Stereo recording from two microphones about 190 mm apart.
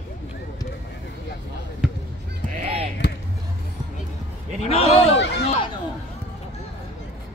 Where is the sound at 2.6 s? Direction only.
30° right (ahead or behind).